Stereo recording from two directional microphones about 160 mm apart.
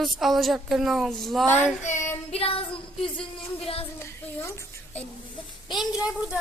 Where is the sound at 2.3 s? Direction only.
35° left (ahead or behind).